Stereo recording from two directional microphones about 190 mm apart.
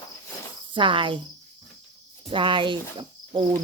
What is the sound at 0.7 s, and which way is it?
Speech, 25° right (ahead or behind).